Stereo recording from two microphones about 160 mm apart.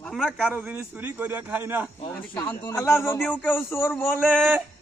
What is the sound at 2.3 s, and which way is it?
A man's voice, 25° left (ahead or behind).